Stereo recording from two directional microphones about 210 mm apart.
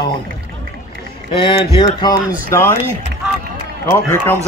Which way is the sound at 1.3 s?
25° left (ahead or behind).